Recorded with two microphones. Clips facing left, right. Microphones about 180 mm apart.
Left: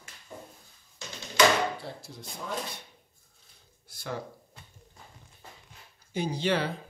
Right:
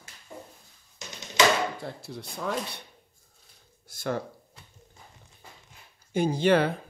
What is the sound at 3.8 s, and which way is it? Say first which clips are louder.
Speech: right 6 dB; 55° right (ahead or behind).